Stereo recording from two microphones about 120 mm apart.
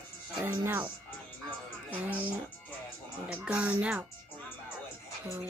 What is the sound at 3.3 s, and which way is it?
Speech, 5° right (ahead or behind).